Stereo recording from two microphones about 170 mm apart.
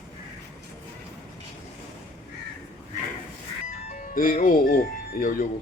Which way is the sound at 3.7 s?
55° left (ahead or behind).